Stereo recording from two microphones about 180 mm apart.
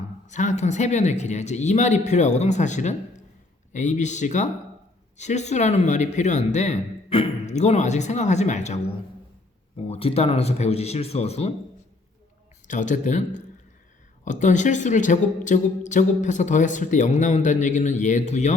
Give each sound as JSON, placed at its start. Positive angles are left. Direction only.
{"t": 0.3, "sound": "a woman's voice", "side_deg": 40}
{"t": 9.8, "sound": "speech", "side_deg": 35}
{"t": 12.6, "sound": "a woman's voice", "side_deg": 45}